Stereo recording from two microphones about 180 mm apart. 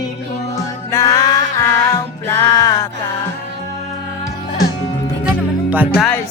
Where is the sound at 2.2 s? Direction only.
15° left (ahead or behind).